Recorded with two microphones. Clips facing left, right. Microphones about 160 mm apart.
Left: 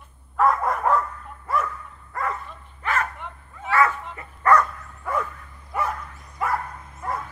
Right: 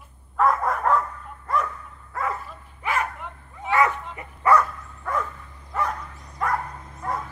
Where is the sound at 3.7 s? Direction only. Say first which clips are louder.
Even; 20° right (ahead or behind).